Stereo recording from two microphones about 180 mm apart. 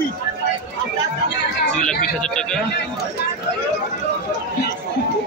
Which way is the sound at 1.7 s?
5° left (ahead or behind).